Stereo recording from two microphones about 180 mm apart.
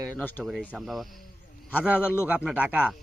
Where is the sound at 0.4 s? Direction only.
5° right (ahead or behind).